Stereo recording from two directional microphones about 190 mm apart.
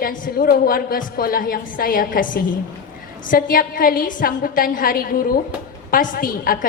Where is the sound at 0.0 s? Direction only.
50° left (ahead or behind).